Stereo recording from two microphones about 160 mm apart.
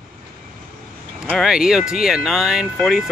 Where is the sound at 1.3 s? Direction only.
Centre (ahead or behind).